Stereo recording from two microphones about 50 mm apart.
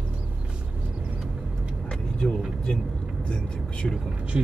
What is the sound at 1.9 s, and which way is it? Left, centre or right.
Vehicle, centre.